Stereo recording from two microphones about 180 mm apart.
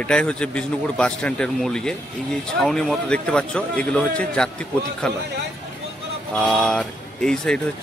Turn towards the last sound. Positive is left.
turn(degrees=5)  # may be behind; listen again after turning